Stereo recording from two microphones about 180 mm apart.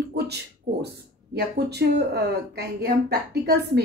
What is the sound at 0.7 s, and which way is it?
Speech, 55° right (ahead or behind).